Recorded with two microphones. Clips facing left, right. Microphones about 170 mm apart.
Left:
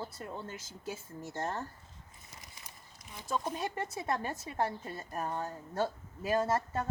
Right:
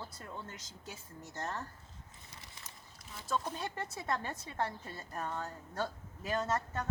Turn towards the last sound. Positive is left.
turn(degrees=25)  # may be behind; listen again after turning